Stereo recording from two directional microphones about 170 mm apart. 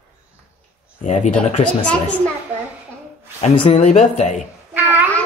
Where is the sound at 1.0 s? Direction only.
45° left (ahead or behind).